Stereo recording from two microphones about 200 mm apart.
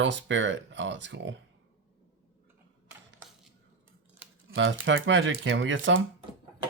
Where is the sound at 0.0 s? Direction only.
65° right (ahead or behind).